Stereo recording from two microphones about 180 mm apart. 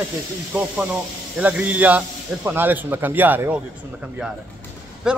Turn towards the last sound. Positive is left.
turn(degrees=-5)  # may be behind; listen again after turning